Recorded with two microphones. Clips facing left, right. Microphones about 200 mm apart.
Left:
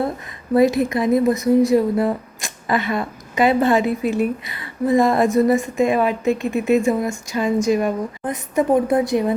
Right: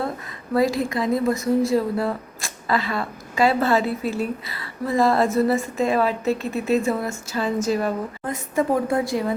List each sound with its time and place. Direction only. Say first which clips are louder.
0.5 s a woman's voice: left 5 dB; 20° left (ahead or behind)